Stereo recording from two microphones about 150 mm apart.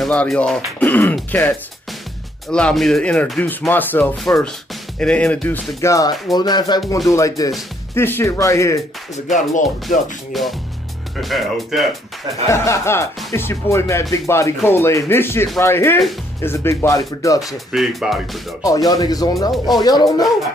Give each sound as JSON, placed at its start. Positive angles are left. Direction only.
{"t": 0.0, "sound": "speech", "side_deg": 5}
{"t": 4.0, "sound": "speech", "side_deg": 0}
{"t": 5.8, "sound": "speech", "side_deg": 20}
{"t": 9.1, "sound": "speech", "side_deg": 55}
{"t": 10.3, "sound": "speech", "side_deg": 0}
{"t": 12.4, "sound": "speech", "side_deg": 20}
{"t": 17.6, "sound": "speech", "side_deg": -5}
{"t": 18.9, "sound": "speech", "side_deg": 25}